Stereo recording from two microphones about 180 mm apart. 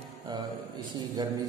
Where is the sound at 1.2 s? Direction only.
25° right (ahead or behind).